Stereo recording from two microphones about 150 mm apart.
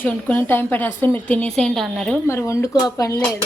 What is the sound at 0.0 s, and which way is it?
A woman's voice, 15° left (ahead or behind).